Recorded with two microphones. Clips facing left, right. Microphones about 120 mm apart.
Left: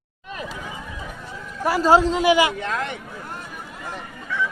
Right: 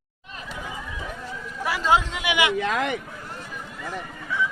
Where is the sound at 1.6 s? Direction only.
40° left (ahead or behind).